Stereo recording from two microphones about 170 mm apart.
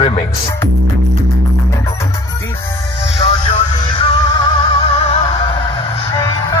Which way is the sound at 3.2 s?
35° left (ahead or behind).